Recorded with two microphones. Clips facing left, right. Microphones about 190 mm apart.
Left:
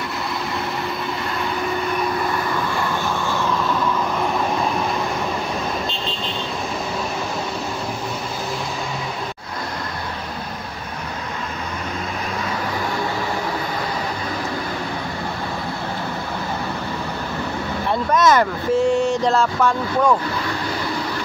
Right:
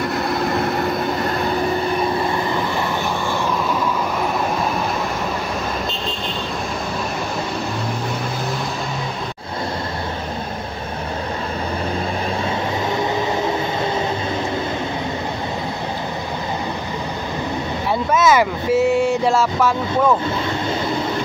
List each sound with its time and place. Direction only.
0.3 s vehicle: 50° right (ahead or behind)
18.1 s vehicle: 5° right (ahead or behind)